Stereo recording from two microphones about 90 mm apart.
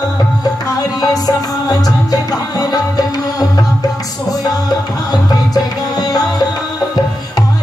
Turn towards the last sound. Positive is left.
turn(degrees=45)  # may be behind; listen again after turning